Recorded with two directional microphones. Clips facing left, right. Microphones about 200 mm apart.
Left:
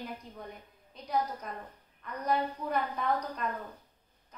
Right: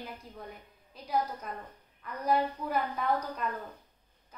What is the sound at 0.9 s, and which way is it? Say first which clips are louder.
A woman's voice: even; 5° right (ahead or behind).